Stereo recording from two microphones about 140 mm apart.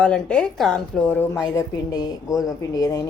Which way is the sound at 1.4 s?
30° left (ahead or behind).